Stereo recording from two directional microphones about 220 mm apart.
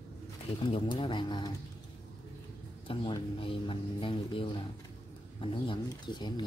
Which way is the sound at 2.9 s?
25° left (ahead or behind).